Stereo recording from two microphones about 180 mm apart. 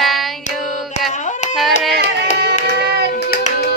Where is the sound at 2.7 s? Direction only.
65° right (ahead or behind).